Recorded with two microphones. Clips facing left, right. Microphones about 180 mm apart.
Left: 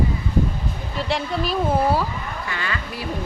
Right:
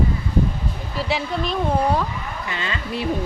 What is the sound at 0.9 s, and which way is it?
Speech, centre (ahead or behind).